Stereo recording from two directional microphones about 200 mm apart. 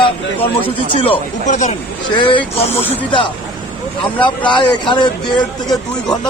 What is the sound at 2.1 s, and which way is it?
Speech, 25° left (ahead or behind).